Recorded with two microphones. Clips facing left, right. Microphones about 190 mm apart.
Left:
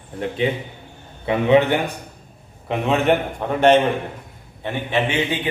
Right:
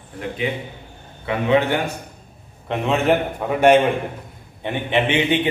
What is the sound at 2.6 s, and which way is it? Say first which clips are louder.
A man's voice: even; centre (ahead or behind).